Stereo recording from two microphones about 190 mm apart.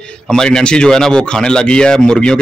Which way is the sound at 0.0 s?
5° left (ahead or behind).